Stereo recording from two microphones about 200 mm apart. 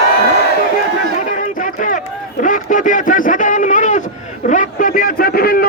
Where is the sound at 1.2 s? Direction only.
40° left (ahead or behind).